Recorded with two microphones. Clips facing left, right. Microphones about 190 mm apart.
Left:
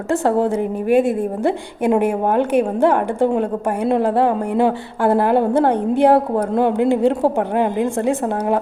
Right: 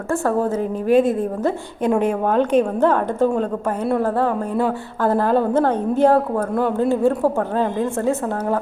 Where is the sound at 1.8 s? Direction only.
10° left (ahead or behind).